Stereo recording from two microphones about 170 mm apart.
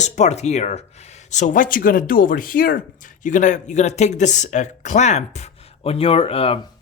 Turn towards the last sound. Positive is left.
turn(degrees=35)  # may be behind; listen again after turning